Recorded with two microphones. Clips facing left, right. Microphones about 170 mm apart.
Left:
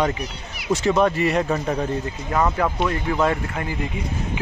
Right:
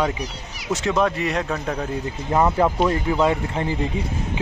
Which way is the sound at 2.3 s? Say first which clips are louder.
Right 3 dB; 20° right (ahead or behind).